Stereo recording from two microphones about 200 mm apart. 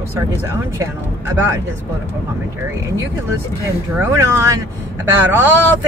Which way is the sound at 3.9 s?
10° right (ahead or behind).